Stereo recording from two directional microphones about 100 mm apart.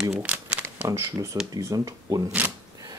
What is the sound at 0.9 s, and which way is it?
Speech, 35° right (ahead or behind).